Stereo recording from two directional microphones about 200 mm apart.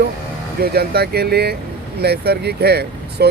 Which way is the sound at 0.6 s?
50° right (ahead or behind).